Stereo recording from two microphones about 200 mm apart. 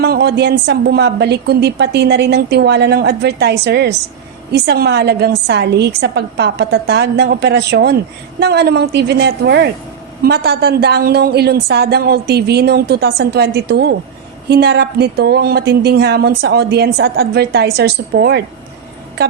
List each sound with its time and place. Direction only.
0.0 s a woman's voice: 50° right (ahead or behind)